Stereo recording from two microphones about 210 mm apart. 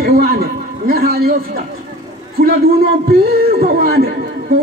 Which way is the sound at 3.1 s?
45° right (ahead or behind).